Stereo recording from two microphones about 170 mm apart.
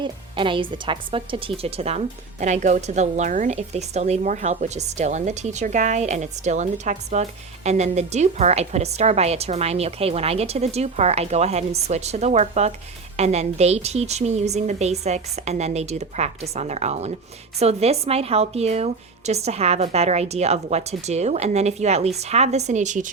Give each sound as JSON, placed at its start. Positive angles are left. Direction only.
{"t": 0.0, "sound": "a woman's voice", "side_deg": -30}